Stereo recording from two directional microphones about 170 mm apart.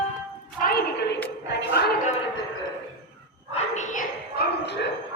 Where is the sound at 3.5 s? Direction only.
45° left (ahead or behind).